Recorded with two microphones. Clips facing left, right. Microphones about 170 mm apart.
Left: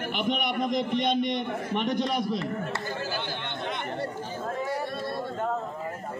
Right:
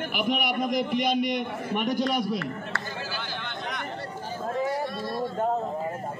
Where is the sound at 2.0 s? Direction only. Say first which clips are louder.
Right 1 dB; 25° left (ahead or behind).